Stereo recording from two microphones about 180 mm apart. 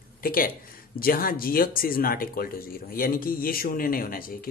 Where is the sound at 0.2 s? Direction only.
55° left (ahead or behind).